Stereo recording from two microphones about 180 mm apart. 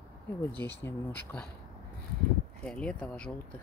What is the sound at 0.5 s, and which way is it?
Speech, 10° left (ahead or behind).